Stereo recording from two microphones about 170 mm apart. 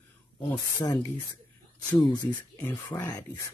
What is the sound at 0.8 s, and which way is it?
Speech, 20° left (ahead or behind).